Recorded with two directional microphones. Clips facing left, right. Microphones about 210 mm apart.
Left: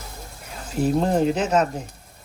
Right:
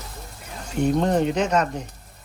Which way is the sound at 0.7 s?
5° left (ahead or behind).